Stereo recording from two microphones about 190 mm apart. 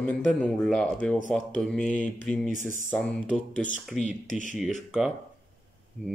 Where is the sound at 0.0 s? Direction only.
5° left (ahead or behind).